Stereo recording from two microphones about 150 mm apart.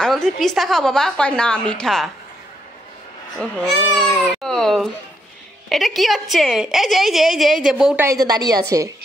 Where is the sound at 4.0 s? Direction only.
Centre (ahead or behind).